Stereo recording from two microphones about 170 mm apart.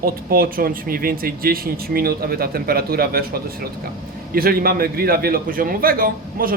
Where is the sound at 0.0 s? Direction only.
60° right (ahead or behind).